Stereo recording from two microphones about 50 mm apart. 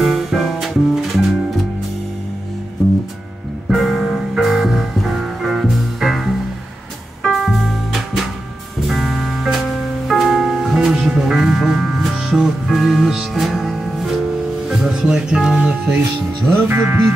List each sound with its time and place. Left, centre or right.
0.0 s music: centre
3.6 s music: centre
7.3 s music: centre
8.8 s music: centre
16.6 s music: right